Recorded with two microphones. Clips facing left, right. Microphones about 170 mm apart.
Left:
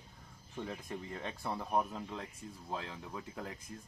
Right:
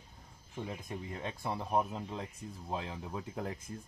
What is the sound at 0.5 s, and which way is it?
Speech, 15° right (ahead or behind).